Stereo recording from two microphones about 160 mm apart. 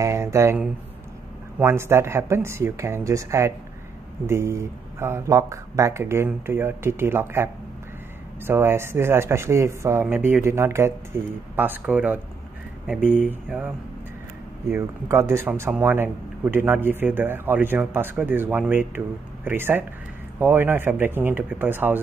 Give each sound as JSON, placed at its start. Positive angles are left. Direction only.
{"t": 0.0, "sound": "a sound", "side_deg": -15}
{"t": 1.6, "sound": "speech", "side_deg": -15}
{"t": 14.7, "sound": "speech", "side_deg": -15}